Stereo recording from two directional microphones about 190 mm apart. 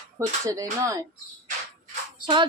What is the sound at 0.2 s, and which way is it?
Speech, 15° right (ahead or behind).